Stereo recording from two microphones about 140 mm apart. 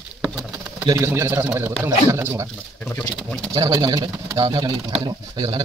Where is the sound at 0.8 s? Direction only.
20° right (ahead or behind).